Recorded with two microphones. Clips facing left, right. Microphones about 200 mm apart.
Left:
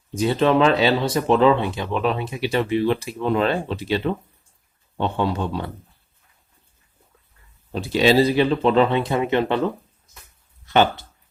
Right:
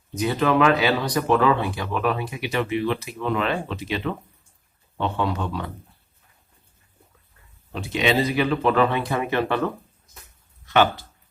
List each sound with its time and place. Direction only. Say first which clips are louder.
0.1 s speech: left 3 dB; 30° left (ahead or behind)
7.7 s speech: left 5 dB; 35° left (ahead or behind)
10.7 s speech: left 1 dB; 25° left (ahead or behind)